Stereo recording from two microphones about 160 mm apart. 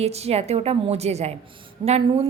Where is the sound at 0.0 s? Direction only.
40° right (ahead or behind).